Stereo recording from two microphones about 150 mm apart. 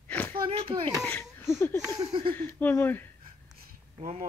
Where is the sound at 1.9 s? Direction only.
30° right (ahead or behind).